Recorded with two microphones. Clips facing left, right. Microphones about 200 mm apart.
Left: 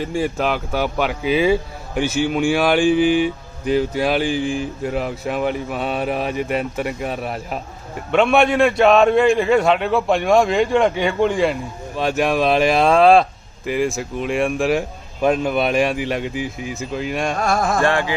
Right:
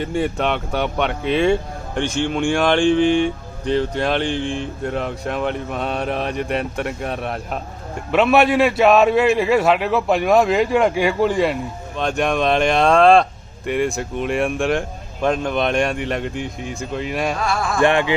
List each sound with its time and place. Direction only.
0.0 s speech: centre (ahead or behind)
17.4 s music: 45° left (ahead or behind)
17.8 s music: 20° right (ahead or behind)